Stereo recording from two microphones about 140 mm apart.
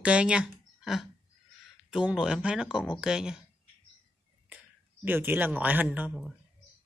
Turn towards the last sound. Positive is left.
turn(degrees=-5)  # may be behind; listen again after turning